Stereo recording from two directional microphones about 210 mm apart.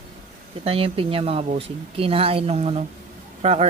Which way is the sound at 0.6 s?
25° right (ahead or behind).